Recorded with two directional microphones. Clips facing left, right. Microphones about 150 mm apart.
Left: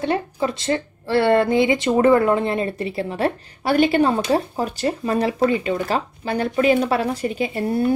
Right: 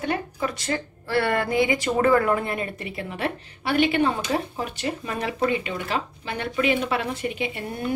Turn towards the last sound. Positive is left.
turn(degrees=35)  # may be behind; listen again after turning